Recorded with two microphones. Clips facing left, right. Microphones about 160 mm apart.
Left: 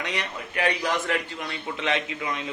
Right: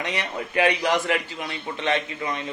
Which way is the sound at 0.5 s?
25° right (ahead or behind).